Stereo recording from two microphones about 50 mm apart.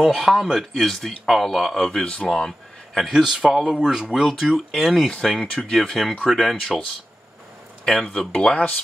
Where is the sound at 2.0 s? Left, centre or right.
Centre.